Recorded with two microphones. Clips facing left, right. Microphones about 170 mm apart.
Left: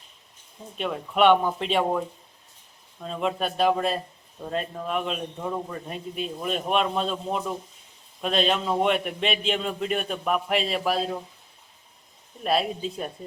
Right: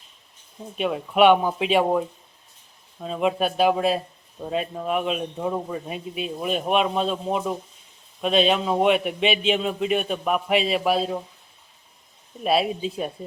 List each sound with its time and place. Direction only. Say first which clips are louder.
0.8 s a man's voice: right 4 dB; 5° right (ahead or behind)
12.4 s a man's voice: right 3 dB; 5° right (ahead or behind)